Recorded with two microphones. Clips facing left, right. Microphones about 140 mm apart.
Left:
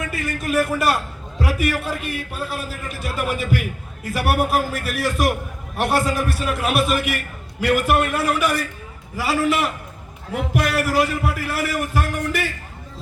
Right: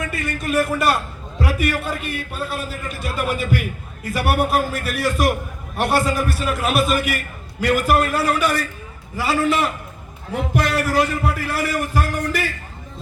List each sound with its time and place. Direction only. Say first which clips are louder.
0.0 s a man's voice: right 1 dB; centre (ahead or behind)
8.1 s a man's voice: right 1 dB; 30° right (ahead or behind)
9.1 s a man's voice: right 1 dB; 5° left (ahead or behind)